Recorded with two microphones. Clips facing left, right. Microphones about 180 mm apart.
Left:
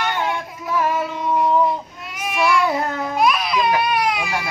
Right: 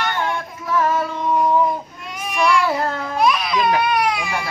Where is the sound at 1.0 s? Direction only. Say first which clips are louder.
Right 1 dB; 10° left (ahead or behind).